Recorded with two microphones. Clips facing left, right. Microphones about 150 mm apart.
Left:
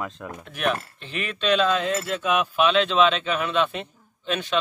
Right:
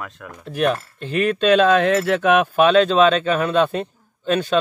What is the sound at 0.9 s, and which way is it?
Speech, 45° right (ahead or behind).